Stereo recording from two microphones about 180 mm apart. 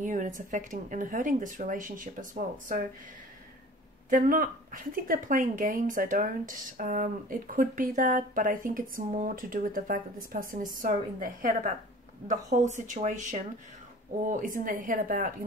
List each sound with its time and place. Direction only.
0.0 s a sound: 45° right (ahead or behind)
0.5 s a woman's voice: 45° right (ahead or behind)
4.1 s a woman's voice: 50° right (ahead or behind)